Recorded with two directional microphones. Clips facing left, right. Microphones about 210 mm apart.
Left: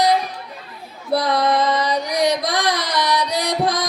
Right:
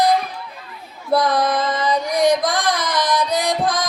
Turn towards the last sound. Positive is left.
turn(degrees=-50)  # may be behind; listen again after turning